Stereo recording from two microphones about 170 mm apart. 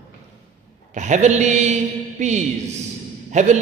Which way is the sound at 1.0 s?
45° right (ahead or behind).